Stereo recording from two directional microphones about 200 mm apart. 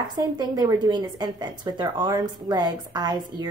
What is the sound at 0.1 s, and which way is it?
Speech, 20° right (ahead or behind).